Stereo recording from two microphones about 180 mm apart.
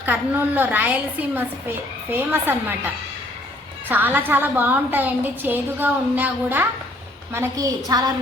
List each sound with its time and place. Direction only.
0.0 s a woman's voice: 10° right (ahead or behind)
3.8 s a woman's voice: 10° right (ahead or behind)